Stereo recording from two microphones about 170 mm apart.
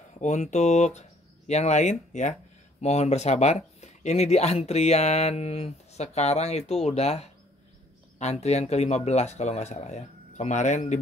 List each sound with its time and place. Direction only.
0.2 s speech: 45° left (ahead or behind)